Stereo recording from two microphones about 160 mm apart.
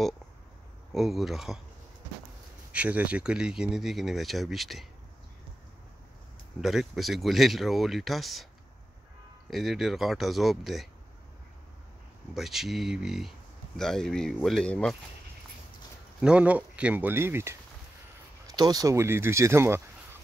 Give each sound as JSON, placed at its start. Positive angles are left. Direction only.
{"t": 0.9, "sound": "speech", "side_deg": 0}
{"t": 2.7, "sound": "speech", "side_deg": -10}
{"t": 6.6, "sound": "speech", "side_deg": 0}
{"t": 9.5, "sound": "speech", "side_deg": 0}
{"t": 12.4, "sound": "speech", "side_deg": 0}
{"t": 16.2, "sound": "speech", "side_deg": -5}